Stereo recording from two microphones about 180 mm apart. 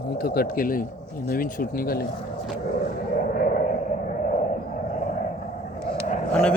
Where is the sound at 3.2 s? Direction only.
50° left (ahead or behind).